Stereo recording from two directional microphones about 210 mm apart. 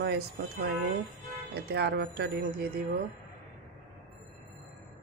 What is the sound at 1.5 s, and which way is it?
Speech, 50° right (ahead or behind).